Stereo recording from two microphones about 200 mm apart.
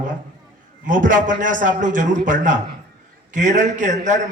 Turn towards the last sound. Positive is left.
turn(degrees=-35)  # may be behind; listen again after turning